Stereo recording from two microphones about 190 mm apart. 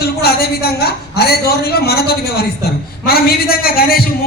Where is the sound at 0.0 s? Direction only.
55° left (ahead or behind).